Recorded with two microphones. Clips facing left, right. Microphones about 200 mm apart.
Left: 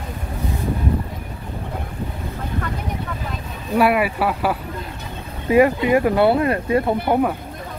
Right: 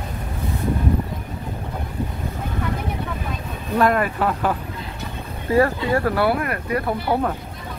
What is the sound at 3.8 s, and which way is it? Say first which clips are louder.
Speech: left 1 dB; 10° left (ahead or behind).